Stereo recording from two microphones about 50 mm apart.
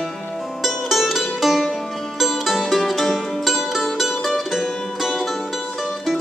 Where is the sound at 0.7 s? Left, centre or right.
Centre.